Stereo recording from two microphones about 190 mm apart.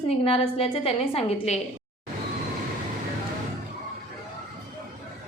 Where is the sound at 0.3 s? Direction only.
30° left (ahead or behind).